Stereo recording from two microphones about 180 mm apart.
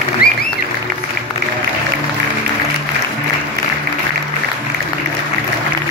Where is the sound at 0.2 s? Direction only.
55° left (ahead or behind).